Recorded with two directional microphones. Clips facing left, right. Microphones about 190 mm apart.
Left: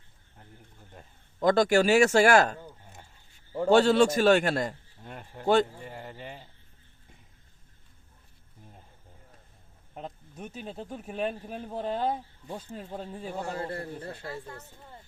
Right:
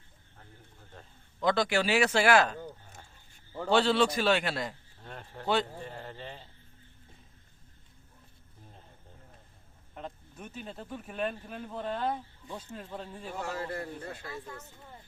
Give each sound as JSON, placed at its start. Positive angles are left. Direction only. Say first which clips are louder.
{"t": 1.4, "sound": "speech", "louder": "left 6 dB", "side_deg": 45}
{"t": 3.7, "sound": "speech", "louder": "left 5 dB", "side_deg": 45}
{"t": 5.0, "sound": "speech", "louder": "left 6 dB", "side_deg": 10}
{"t": 10.8, "sound": "speech", "louder": "left 2 dB", "side_deg": 35}